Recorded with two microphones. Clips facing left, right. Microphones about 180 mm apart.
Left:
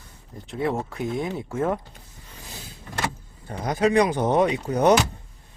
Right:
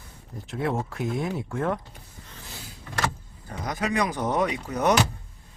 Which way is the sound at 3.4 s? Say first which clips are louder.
Left 7 dB; 30° left (ahead or behind).